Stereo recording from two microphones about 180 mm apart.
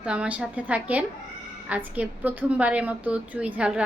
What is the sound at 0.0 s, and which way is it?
A woman's voice, 5° right (ahead or behind).